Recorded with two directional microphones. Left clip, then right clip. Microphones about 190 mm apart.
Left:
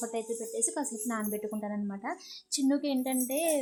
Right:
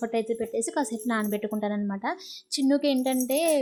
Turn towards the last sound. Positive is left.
turn(degrees=-20)  # may be behind; listen again after turning